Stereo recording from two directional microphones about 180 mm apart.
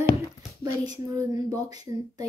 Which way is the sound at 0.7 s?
20° right (ahead or behind).